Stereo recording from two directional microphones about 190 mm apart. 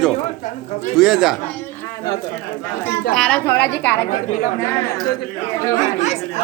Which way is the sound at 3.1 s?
5° left (ahead or behind).